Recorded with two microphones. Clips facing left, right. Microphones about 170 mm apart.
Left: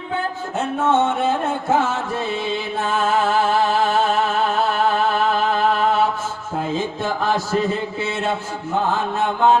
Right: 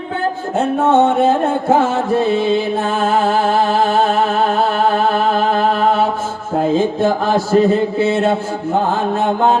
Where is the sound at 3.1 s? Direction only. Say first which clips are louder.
Right 3 dB; 30° right (ahead or behind).